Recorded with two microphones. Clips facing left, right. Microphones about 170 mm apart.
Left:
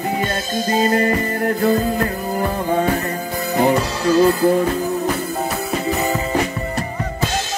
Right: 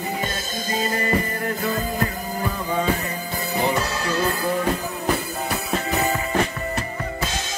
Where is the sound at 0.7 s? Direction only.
55° left (ahead or behind).